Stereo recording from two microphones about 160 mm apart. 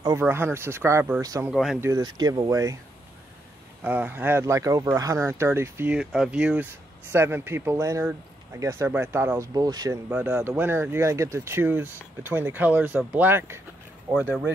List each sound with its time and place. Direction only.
0.1 s speech: 15° right (ahead or behind)
1.5 s speech: centre (ahead or behind)
1.8 s speech: 20° right (ahead or behind)
3.8 s speech: 10° right (ahead or behind)
5.9 s speech: 5° right (ahead or behind); by 9.9 s 25° right (ahead or behind)
10.0 s speech: 10° right (ahead or behind)